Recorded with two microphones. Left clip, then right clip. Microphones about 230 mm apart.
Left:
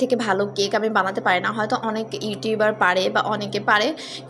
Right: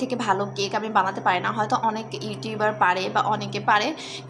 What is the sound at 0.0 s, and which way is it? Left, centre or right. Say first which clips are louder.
A woman's voice: left 3 dB; centre.